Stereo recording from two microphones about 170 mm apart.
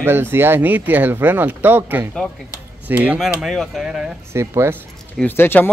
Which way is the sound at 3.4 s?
Centre (ahead or behind).